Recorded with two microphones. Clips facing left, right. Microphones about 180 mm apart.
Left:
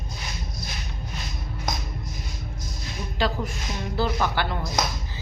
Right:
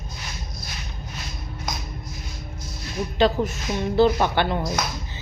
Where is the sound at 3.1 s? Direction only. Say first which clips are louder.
Right 6 dB; 20° right (ahead or behind).